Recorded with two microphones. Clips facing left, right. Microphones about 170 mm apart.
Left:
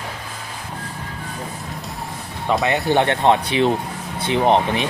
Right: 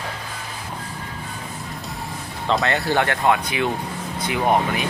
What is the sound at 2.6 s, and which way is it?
Speech, 20° left (ahead or behind).